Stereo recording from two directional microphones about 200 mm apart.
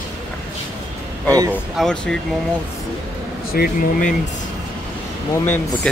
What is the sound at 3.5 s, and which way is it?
Speech, 45° left (ahead or behind).